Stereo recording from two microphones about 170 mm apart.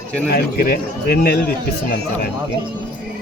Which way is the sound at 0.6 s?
60° left (ahead or behind).